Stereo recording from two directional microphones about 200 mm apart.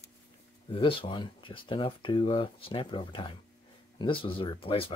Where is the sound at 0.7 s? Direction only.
25° left (ahead or behind).